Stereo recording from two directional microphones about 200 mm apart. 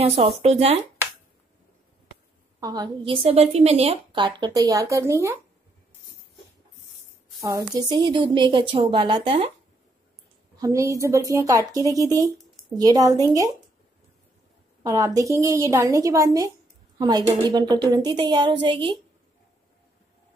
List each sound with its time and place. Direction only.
0.0 s a woman's voice: 30° right (ahead or behind)
2.6 s a woman's voice: 20° right (ahead or behind)
7.4 s a woman's voice: 20° right (ahead or behind)
10.6 s a woman's voice: 15° right (ahead or behind)
14.8 s a woman's voice: 15° right (ahead or behind)